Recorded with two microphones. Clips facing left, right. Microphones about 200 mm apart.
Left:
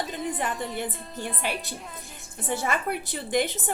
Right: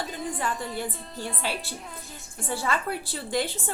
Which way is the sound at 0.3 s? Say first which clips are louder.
Left 1 dB; 20° left (ahead or behind).